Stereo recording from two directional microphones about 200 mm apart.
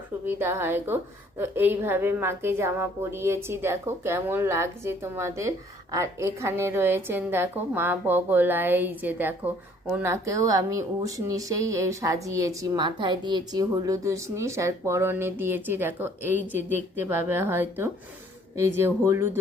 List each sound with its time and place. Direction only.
0.3 s a woman's voice: 10° right (ahead or behind)
16.6 s a woman's voice: 35° left (ahead or behind)
17.1 s a woman's voice: 10° right (ahead or behind)